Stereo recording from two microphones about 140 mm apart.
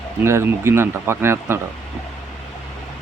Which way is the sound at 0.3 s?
20° right (ahead or behind).